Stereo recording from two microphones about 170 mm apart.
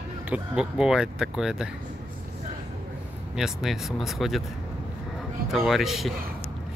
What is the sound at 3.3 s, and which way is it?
Speech, 5° right (ahead or behind).